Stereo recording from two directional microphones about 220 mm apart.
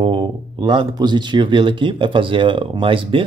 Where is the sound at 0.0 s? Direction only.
20° right (ahead or behind).